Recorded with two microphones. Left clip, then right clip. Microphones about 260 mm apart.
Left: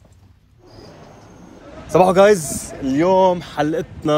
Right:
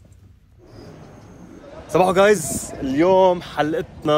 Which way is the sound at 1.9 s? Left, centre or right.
Centre.